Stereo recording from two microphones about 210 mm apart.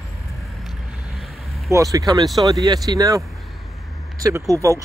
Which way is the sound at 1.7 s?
15° right (ahead or behind).